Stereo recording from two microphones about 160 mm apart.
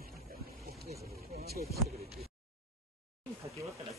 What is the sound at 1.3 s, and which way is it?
Speech, 75° right (ahead or behind).